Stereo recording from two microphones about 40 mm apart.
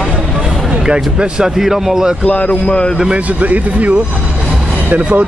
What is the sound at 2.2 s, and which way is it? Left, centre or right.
Speech, left.